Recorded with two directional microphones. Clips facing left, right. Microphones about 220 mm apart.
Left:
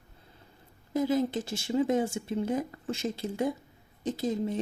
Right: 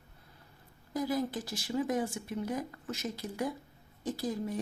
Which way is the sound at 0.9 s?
25° left (ahead or behind).